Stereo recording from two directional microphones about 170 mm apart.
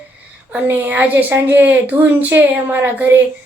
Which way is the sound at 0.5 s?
10° right (ahead or behind).